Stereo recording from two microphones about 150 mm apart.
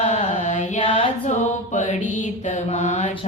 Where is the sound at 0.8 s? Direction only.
40° left (ahead or behind).